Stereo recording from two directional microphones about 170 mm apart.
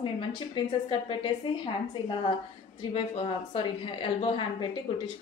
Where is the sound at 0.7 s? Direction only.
30° left (ahead or behind).